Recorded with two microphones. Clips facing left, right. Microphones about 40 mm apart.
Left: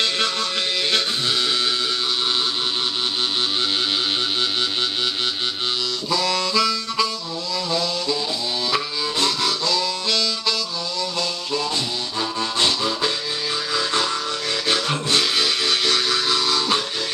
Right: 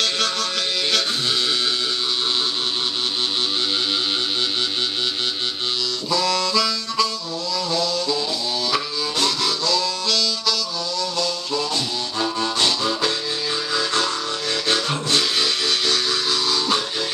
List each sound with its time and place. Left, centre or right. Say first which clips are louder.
0.0 s music: even; centre
6.0 s harmonica: right 1 dB; centre
7.5 s a sound: right 1 dB; left
8.6 s harmonica: left 1 dB; centre
11.0 s music: right 1 dB; centre
12.5 s harmonica: left 2 dB; centre
13.7 s music: even; centre
14.7 s a sound: even; centre
16.3 s music: left 1 dB; centre